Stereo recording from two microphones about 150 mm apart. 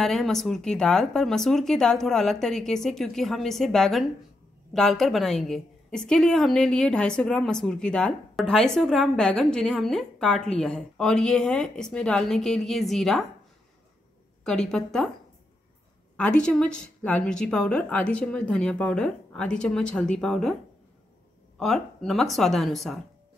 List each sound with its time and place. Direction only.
0.0 s a woman's voice: centre (ahead or behind)
14.4 s a woman's voice: 5° left (ahead or behind)
16.2 s a woman's voice: 5° left (ahead or behind)
21.5 s a woman's voice: centre (ahead or behind)